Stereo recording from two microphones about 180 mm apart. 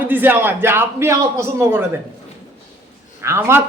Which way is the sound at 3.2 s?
15° right (ahead or behind).